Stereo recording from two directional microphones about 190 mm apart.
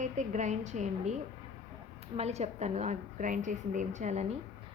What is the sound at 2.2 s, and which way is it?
A woman's voice, 35° right (ahead or behind).